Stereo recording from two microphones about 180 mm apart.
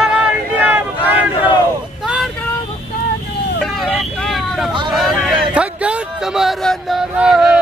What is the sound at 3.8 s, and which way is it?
Vehicle, centre (ahead or behind).